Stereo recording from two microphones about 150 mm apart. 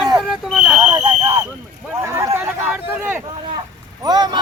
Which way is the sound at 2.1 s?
20° right (ahead or behind).